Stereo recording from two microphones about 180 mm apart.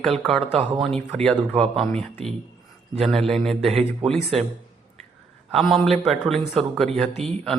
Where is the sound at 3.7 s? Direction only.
30° right (ahead or behind).